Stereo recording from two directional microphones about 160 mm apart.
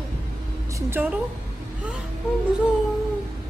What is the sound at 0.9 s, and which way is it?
Speech, 10° right (ahead or behind).